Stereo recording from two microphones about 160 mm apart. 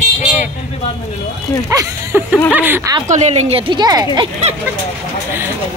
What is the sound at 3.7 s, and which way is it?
Speech, 25° right (ahead or behind).